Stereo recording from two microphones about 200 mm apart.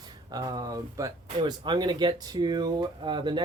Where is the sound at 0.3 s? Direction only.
20° right (ahead or behind).